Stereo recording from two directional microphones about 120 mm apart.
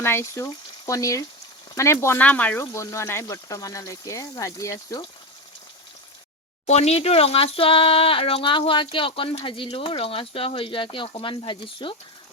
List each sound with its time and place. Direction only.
0.0 s frying: 20° left (ahead or behind)
1.7 s speech: 25° left (ahead or behind)
2.7 s speech: 25° left (ahead or behind)
6.7 s speech: 60° left (ahead or behind); by 11.9 s 45° left (ahead or behind)